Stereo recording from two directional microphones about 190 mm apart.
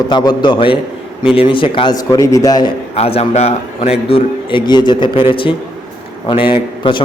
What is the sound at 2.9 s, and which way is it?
A man's voice, 30° left (ahead or behind).